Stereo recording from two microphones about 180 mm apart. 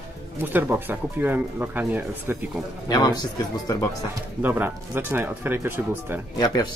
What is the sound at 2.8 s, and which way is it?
Speech, 20° left (ahead or behind).